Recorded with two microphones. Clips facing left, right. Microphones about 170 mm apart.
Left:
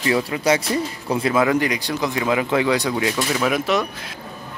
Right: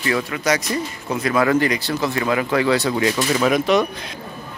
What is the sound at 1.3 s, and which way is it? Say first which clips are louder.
Speech: right 3 dB; 15° left (ahead or behind).